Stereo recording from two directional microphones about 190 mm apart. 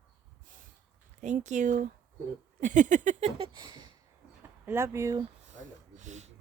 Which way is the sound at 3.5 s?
25° right (ahead or behind).